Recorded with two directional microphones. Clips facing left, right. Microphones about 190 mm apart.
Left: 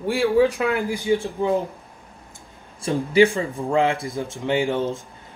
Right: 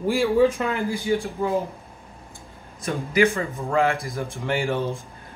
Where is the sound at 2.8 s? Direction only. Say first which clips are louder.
Left 4 dB; 30° left (ahead or behind).